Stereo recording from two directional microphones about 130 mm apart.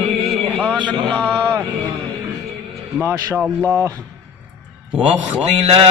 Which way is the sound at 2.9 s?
15° right (ahead or behind).